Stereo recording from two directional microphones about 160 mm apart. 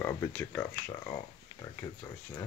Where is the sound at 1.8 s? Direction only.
25° left (ahead or behind).